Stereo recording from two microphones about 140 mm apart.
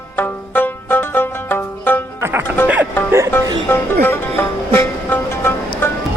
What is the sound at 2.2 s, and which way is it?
Music, 15° right (ahead or behind).